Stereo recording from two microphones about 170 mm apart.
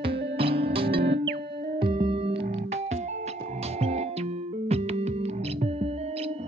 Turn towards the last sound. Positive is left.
turn(degrees=-35)  # may be behind; listen again after turning